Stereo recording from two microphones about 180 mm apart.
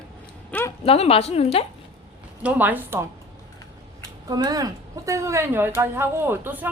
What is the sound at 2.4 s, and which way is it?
Speech, 10° right (ahead or behind).